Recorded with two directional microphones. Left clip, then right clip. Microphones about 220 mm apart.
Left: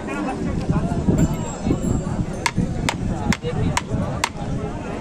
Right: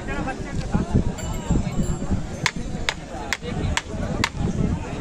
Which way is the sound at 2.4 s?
45° left (ahead or behind).